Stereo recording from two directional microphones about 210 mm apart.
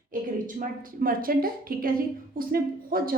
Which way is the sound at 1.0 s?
45° right (ahead or behind).